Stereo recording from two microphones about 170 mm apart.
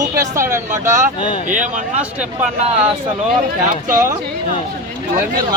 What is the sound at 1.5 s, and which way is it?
Speech, 50° right (ahead or behind).